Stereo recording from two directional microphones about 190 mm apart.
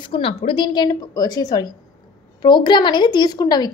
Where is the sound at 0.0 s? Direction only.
25° left (ahead or behind).